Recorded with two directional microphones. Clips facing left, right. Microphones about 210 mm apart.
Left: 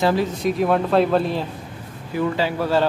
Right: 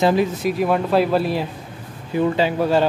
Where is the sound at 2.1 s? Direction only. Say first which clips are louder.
Right 3 dB; 20° right (ahead or behind).